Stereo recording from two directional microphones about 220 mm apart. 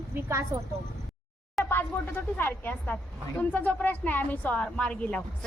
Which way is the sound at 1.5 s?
10° left (ahead or behind).